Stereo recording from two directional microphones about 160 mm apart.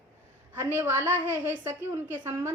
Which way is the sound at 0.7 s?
15° right (ahead or behind).